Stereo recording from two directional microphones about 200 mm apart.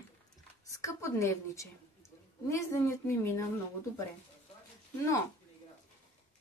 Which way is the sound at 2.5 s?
15° left (ahead or behind).